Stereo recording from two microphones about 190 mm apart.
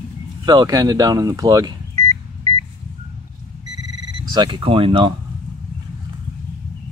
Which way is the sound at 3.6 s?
20° right (ahead or behind).